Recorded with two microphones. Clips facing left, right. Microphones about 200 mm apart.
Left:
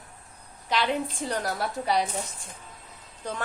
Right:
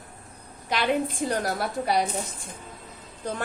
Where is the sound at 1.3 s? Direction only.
40° right (ahead or behind).